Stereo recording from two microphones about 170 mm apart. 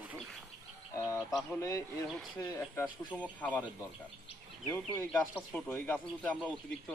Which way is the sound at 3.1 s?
10° left (ahead or behind).